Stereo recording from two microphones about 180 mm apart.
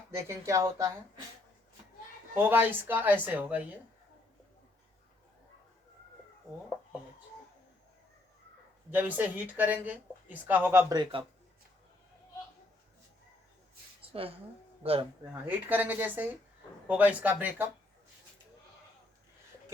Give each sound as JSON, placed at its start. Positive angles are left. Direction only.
{"t": 0.2, "sound": "speech", "side_deg": -15}
{"t": 2.3, "sound": "speech", "side_deg": -10}
{"t": 8.9, "sound": "speech", "side_deg": -10}
{"t": 14.0, "sound": "a sound", "side_deg": -30}
{"t": 14.8, "sound": "speech", "side_deg": -35}
{"t": 15.4, "sound": "speech", "side_deg": -10}